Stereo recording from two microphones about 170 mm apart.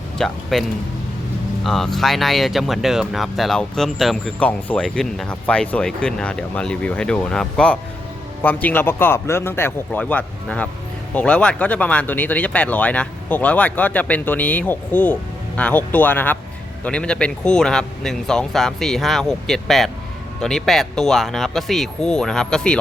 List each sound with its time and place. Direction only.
0.2 s speech: 5° left (ahead or behind)
1.6 s speech: centre (ahead or behind)